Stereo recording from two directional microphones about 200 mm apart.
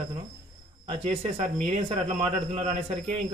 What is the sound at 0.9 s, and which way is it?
A man's voice, 30° right (ahead or behind).